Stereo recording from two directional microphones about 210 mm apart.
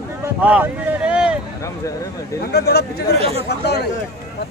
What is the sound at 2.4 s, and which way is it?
Speech, 50° left (ahead or behind).